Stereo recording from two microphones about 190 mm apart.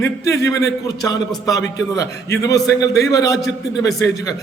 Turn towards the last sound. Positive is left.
turn(degrees=20)  # may be behind; listen again after turning